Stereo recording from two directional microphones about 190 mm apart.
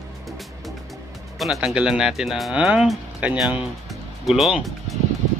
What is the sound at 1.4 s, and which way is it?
Speech, centre (ahead or behind).